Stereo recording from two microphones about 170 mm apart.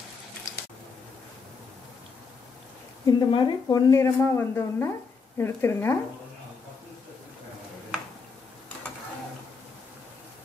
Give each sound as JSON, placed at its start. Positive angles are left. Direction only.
{"t": 3.1, "sound": "a woman's voice", "side_deg": 25}
{"t": 3.9, "sound": "speech", "side_deg": 15}